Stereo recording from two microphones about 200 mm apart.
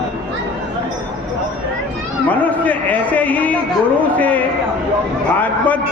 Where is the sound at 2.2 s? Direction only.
10° left (ahead or behind).